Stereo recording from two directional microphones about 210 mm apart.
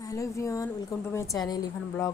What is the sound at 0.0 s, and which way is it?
A woman's voice, 15° left (ahead or behind).